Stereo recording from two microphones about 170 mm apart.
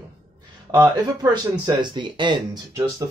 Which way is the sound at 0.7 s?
20° right (ahead or behind).